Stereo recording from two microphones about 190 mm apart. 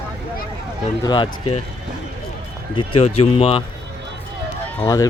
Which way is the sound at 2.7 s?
30° left (ahead or behind).